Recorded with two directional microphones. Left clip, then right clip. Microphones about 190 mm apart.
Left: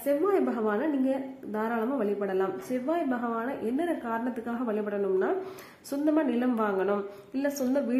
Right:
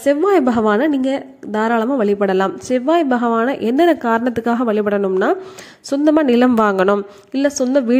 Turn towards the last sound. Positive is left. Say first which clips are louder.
# right 13 dB
turn(degrees=-40)  # may be behind; listen again after turning